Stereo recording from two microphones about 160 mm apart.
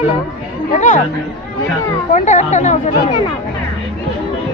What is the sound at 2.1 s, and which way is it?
Speech, 50° left (ahead or behind).